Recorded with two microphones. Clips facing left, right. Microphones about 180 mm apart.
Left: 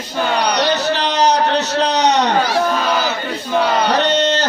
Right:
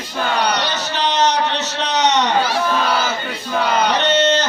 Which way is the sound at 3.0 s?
Centre (ahead or behind).